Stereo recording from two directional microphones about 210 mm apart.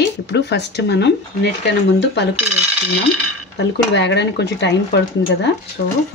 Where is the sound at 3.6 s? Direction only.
55° left (ahead or behind).